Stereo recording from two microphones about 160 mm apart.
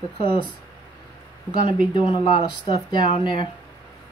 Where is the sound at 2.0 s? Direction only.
35° left (ahead or behind).